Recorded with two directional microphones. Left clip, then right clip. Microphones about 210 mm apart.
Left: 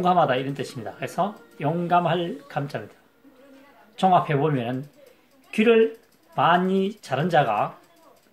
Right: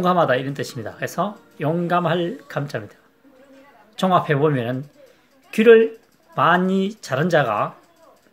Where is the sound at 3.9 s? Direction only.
35° right (ahead or behind).